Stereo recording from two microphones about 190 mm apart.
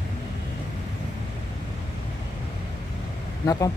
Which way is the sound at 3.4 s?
20° left (ahead or behind).